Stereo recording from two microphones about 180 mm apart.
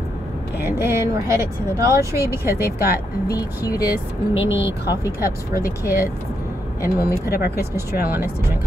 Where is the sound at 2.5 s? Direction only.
60° left (ahead or behind).